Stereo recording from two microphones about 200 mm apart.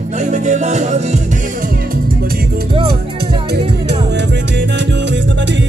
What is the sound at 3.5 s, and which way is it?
Music, 60° right (ahead or behind).